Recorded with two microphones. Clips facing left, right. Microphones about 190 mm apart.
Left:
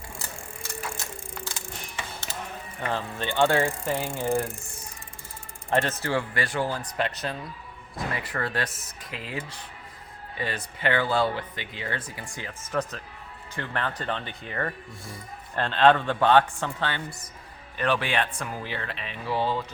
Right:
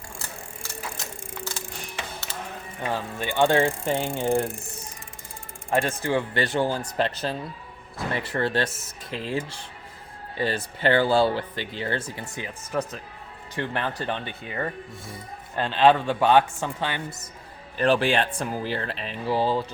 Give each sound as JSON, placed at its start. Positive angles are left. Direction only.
{"t": 2.8, "sound": "speech", "side_deg": -10}
{"t": 5.7, "sound": "a man's voice", "side_deg": -10}
{"t": 17.7, "sound": "speech", "side_deg": -30}